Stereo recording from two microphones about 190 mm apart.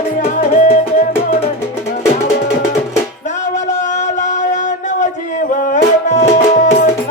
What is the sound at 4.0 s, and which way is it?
Music, 40° left (ahead or behind).